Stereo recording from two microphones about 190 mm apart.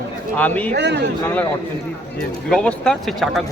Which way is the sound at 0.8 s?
65° right (ahead or behind).